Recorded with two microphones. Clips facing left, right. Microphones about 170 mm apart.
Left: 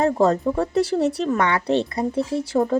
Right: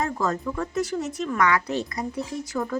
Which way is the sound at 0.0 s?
35° left (ahead or behind).